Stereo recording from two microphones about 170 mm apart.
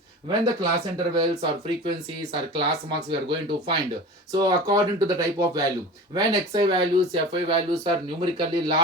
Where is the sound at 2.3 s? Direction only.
25° right (ahead or behind).